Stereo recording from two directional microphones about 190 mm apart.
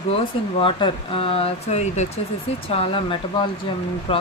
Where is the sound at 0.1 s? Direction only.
30° left (ahead or behind).